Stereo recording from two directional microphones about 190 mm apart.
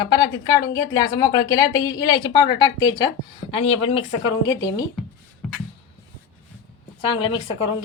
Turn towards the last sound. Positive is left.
turn(degrees=25)  # may be behind; listen again after turning